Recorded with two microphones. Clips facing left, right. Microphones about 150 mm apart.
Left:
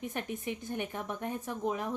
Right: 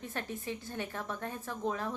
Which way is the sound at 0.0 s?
15° left (ahead or behind).